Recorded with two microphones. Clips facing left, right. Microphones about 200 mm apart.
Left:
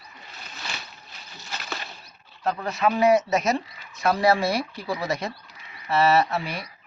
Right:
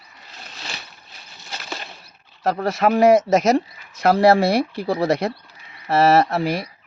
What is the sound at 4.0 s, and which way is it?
Speech, 65° right (ahead or behind).